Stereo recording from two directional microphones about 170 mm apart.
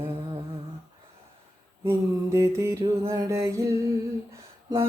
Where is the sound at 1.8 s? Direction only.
15° right (ahead or behind).